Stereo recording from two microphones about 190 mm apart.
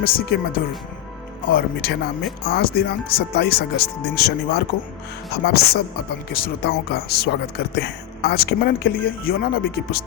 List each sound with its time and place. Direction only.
0.0 s speech: 50° left (ahead or behind)